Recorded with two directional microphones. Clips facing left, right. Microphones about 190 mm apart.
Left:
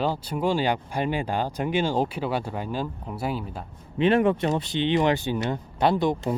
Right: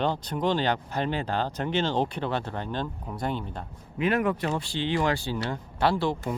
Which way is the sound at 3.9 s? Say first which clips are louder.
Left 5 dB; 25° left (ahead or behind).